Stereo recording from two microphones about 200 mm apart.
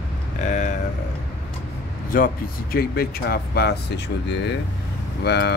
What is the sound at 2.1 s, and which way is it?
Speech, 45° left (ahead or behind).